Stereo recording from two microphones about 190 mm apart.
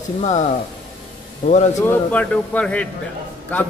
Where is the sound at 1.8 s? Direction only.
10° left (ahead or behind).